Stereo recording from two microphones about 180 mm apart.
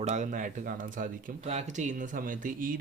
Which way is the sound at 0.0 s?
40° right (ahead or behind).